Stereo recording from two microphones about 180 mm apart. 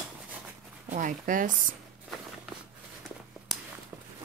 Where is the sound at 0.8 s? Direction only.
45° right (ahead or behind).